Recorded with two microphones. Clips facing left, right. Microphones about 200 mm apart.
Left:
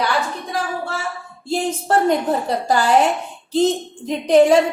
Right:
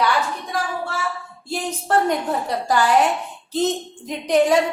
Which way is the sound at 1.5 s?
25° left (ahead or behind).